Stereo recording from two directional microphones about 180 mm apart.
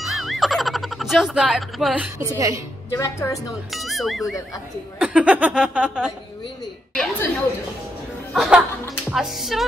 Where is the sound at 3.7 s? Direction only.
Centre (ahead or behind).